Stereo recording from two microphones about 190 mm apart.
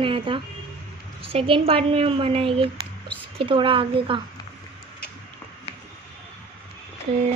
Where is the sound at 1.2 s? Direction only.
30° right (ahead or behind).